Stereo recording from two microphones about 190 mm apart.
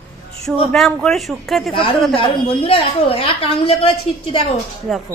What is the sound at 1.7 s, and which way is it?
A woman's voice, 25° left (ahead or behind).